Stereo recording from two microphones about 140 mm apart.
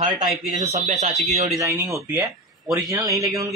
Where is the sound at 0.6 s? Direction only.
55° right (ahead or behind).